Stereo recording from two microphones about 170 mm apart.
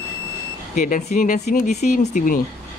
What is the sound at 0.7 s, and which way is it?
Speech, 50° left (ahead or behind).